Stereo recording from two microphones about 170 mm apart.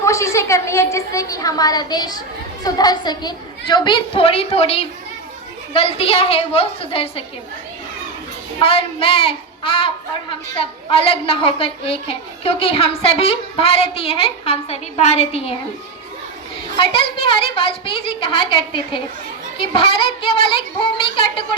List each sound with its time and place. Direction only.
0.0 s a woman's voice: 15° left (ahead or behind); by 7.3 s 35° left (ahead or behind)
8.5 s a woman's voice: 35° left (ahead or behind)
16.7 s a woman's voice: 30° left (ahead or behind)